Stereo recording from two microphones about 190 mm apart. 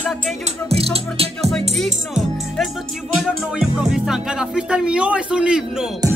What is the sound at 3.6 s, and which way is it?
Speech, 5° right (ahead or behind).